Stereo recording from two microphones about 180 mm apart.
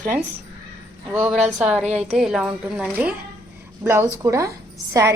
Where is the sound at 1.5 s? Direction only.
5° right (ahead or behind).